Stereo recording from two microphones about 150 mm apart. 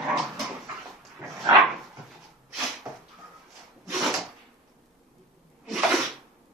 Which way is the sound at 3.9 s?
Centre (ahead or behind).